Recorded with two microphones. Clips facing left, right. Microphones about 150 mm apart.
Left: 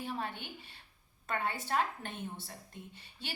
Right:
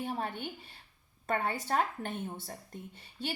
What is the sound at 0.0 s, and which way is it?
Speech, 45° right (ahead or behind).